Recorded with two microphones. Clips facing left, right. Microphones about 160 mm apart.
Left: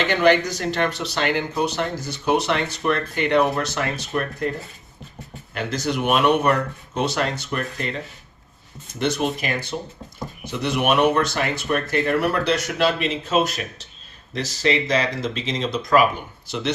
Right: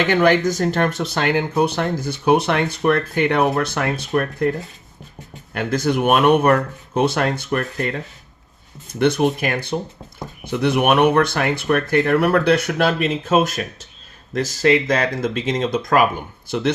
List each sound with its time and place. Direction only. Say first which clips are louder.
0.1 s speech: right 1 dB; 50° right (ahead or behind)
5.5 s speech: right 5 dB; 50° right (ahead or behind)
9.0 s speech: right 6 dB; 55° right (ahead or behind)